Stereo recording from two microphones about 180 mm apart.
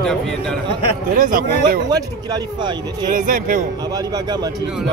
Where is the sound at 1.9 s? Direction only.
20° right (ahead or behind).